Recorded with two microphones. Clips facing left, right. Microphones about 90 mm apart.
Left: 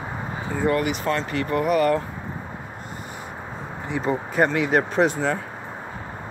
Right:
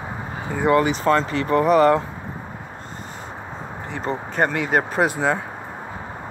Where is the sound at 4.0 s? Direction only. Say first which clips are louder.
Left 1 dB; 55° right (ahead or behind).